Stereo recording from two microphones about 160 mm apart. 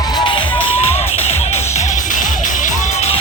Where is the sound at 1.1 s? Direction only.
45° left (ahead or behind).